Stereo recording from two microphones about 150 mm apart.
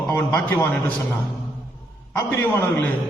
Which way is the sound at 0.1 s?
15° left (ahead or behind).